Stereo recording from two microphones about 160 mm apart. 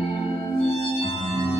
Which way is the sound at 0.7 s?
35° left (ahead or behind).